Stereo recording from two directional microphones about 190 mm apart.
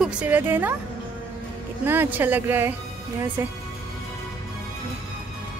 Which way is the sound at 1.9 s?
10° right (ahead or behind).